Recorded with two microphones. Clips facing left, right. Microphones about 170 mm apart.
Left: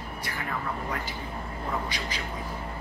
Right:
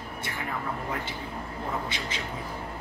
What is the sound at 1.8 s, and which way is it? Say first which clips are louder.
Speech: even; 25° right (ahead or behind).